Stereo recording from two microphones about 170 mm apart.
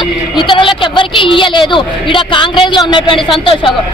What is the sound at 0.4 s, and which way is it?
A man's voice, 30° left (ahead or behind).